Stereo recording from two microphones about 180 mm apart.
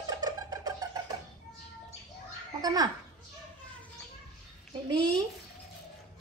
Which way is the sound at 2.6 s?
20° right (ahead or behind).